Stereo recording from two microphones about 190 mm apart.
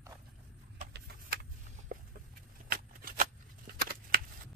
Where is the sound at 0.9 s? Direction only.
55° right (ahead or behind).